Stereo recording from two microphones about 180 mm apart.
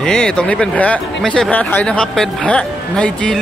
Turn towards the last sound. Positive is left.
turn(degrees=5)  # may be behind; listen again after turning